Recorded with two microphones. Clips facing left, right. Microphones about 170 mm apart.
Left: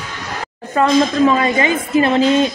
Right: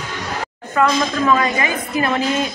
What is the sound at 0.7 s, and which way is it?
Speech, 25° left (ahead or behind).